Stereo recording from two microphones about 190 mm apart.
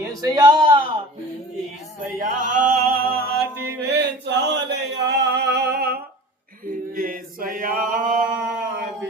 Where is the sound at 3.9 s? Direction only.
65° right (ahead or behind).